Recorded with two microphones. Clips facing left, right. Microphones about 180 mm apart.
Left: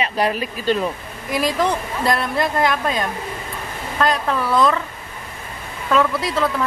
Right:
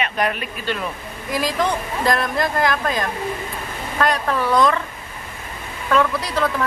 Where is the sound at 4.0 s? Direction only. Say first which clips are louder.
Even; centre (ahead or behind).